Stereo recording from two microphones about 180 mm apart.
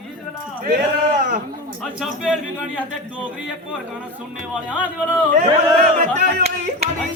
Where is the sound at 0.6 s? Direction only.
50° right (ahead or behind).